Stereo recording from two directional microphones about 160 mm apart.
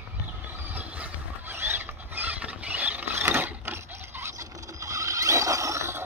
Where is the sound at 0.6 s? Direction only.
10° right (ahead or behind).